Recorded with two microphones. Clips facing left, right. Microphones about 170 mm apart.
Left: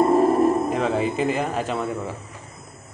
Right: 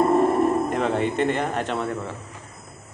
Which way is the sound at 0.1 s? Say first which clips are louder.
Left 2 dB; centre (ahead or behind).